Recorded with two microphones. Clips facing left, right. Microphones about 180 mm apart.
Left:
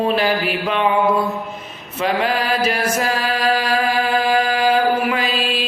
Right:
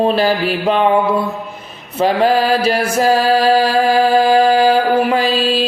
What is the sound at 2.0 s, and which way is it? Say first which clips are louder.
Mantra: right 6 dB; 35° right (ahead or behind).